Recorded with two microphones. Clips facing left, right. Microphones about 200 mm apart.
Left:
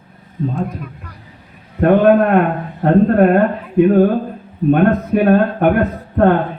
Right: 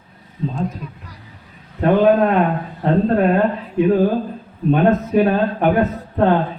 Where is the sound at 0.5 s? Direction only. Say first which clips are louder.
Left 2 dB; 55° left (ahead or behind).